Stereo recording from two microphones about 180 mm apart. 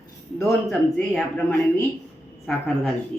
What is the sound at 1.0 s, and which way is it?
Speech, 5° left (ahead or behind).